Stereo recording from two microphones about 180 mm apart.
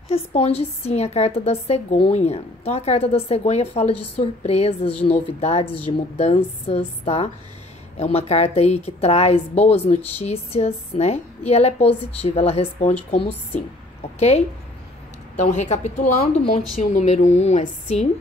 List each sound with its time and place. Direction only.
0.1 s a woman's voice: 35° left (ahead or behind)
15.4 s a woman's voice: 40° left (ahead or behind)